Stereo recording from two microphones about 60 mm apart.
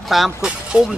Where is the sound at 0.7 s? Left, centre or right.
Centre.